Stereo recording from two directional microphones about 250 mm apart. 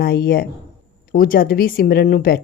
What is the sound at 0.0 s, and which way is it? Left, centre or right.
A woman's voice, left.